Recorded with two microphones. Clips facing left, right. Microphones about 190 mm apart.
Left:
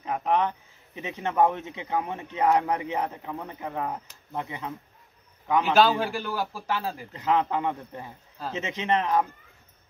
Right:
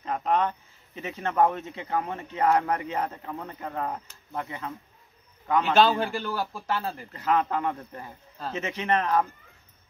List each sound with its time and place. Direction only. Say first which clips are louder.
0.0 s speech: even; 15° left (ahead or behind)
5.6 s a man's voice: even; centre (ahead or behind)
6.7 s speech: even; 15° left (ahead or behind)